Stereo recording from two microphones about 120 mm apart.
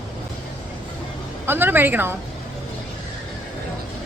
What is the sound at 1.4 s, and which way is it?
Speech, 15° right (ahead or behind).